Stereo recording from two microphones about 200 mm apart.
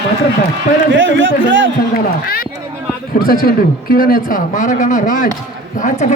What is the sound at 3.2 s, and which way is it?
A man's voice, 50° left (ahead or behind).